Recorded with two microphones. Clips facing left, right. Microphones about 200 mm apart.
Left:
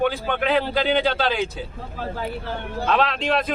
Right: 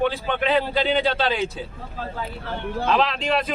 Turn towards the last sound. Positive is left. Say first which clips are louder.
# left 1 dB
turn(degrees=0)  # may be behind; listen again after turning